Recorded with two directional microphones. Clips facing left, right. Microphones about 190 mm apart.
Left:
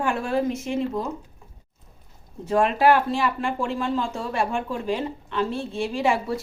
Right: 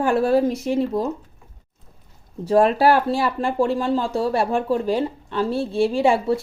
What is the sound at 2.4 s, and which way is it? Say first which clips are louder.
Speech: right 3 dB; 35° right (ahead or behind).